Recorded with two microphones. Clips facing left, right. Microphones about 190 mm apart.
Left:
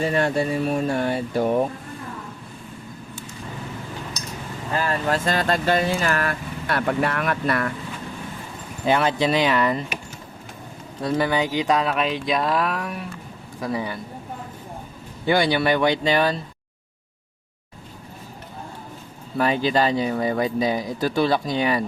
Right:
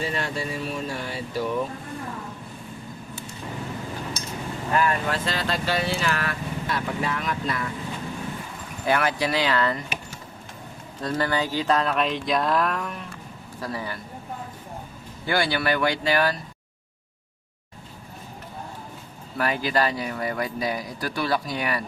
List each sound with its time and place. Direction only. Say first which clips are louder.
0.0 s speech: left 7 dB; 55° left (ahead or behind)
4.7 s speech: left 1 dB; 30° left (ahead or behind); by 7.7 s 65° left (ahead or behind)
8.8 s speech: left 3 dB; 25° left (ahead or behind)
11.0 s speech: left 4 dB; 15° left (ahead or behind)
15.3 s speech: left 5 dB; 20° left (ahead or behind)
19.4 s speech: left 4 dB; 25° left (ahead or behind)